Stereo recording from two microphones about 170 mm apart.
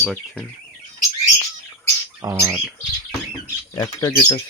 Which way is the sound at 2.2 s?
15° right (ahead or behind).